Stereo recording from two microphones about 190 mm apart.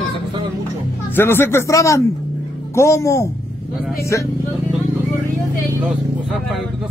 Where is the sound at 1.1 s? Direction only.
10° left (ahead or behind).